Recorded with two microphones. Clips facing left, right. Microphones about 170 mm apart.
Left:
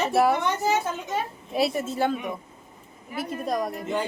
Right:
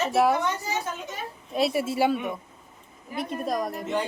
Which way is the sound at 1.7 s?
10° right (ahead or behind).